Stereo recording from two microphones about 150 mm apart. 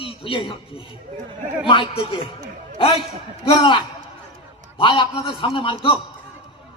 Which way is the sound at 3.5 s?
30° left (ahead or behind).